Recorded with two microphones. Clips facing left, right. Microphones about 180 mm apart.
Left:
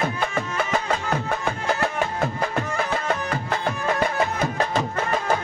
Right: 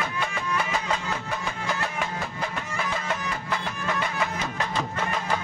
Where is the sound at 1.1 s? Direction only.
55° left (ahead or behind).